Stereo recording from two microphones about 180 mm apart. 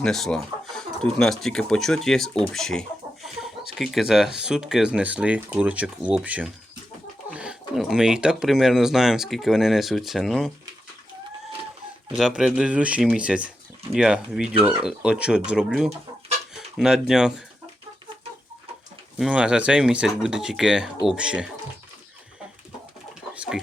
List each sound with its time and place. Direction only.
0.0 s speech: 5° left (ahead or behind)
12.1 s speech: 5° right (ahead or behind)
19.2 s speech: 5° right (ahead or behind)